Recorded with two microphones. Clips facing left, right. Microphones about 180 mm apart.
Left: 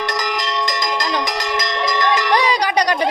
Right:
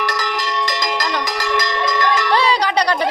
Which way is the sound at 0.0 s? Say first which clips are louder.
Even; 20° left (ahead or behind).